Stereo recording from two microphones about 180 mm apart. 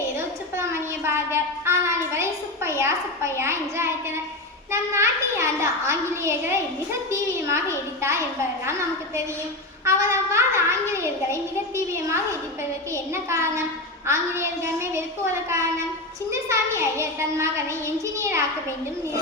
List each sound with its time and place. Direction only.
0.5 s a sound: 15° right (ahead or behind)
4.7 s a child's voice: 15° right (ahead or behind)
9.8 s a child's voice: 15° right (ahead or behind)
17.0 s a child's voice: 15° right (ahead or behind)